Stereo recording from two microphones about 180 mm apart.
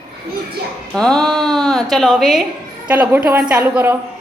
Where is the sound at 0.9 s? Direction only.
5° left (ahead or behind).